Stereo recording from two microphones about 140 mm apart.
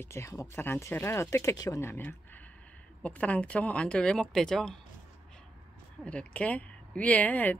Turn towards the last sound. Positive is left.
turn(degrees=10)  # may be behind; listen again after turning